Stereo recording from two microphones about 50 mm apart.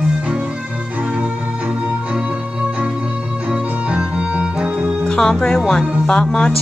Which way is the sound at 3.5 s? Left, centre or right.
Right.